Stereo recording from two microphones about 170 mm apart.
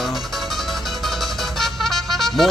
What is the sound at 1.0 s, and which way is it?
Music, centre (ahead or behind).